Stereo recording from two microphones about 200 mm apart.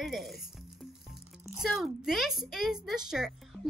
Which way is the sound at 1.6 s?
Centre (ahead or behind).